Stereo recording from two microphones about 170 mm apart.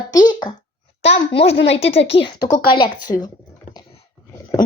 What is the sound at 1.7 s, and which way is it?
A child's voice, 35° left (ahead or behind).